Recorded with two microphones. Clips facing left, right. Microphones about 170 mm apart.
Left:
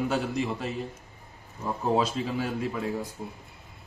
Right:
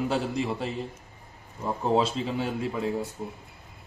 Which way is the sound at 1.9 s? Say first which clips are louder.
Right 1 dB; 25° right (ahead or behind).